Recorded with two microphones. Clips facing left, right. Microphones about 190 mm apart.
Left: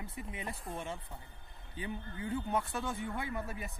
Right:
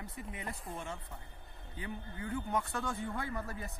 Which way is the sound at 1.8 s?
25° left (ahead or behind).